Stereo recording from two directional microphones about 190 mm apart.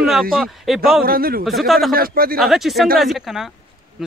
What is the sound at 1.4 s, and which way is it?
Speech, centre (ahead or behind).